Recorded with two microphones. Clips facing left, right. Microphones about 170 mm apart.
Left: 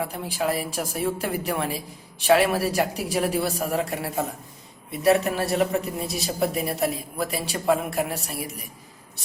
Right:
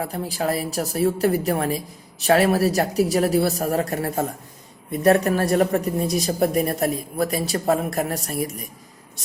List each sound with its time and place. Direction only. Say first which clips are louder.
0.0 s a woman's voice: right 2 dB; 40° right (ahead or behind)